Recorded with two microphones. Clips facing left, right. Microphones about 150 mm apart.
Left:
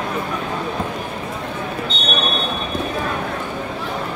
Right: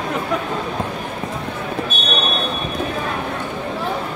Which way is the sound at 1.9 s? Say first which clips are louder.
Even; 20° left (ahead or behind).